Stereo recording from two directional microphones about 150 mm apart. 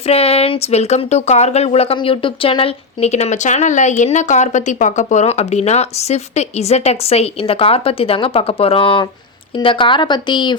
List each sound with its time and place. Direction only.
0.1 s a woman's voice: 40° left (ahead or behind)